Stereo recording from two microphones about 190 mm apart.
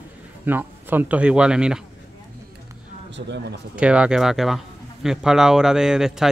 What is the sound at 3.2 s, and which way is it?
Speech, 65° right (ahead or behind).